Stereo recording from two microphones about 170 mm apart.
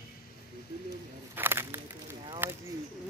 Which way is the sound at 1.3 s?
15° right (ahead or behind).